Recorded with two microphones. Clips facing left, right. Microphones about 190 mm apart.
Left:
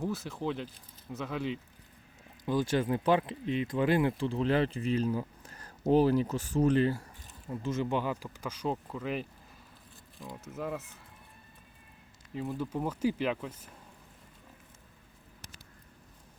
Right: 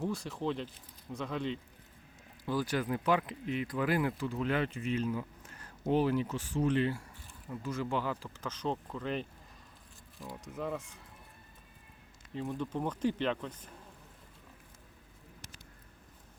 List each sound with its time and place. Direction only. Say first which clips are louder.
0.0 s speech: left 1 dB; centre (ahead or behind)
2.4 s speech: left 4 dB; 20° left (ahead or behind); by 7.0 s 40° left (ahead or behind)
7.2 s speech: left 4 dB; 25° left (ahead or behind); by 11.0 s 5° left (ahead or behind)
12.3 s speech: left 1 dB; 5° left (ahead or behind)